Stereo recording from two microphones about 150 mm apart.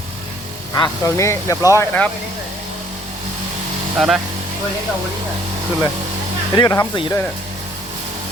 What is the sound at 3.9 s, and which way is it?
Speech, 5° right (ahead or behind).